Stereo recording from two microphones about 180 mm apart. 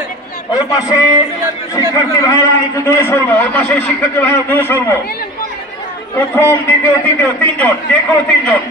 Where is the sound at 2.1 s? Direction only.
15° left (ahead or behind).